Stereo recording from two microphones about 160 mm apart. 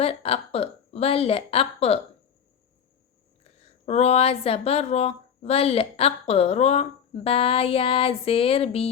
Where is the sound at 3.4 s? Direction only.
40° left (ahead or behind).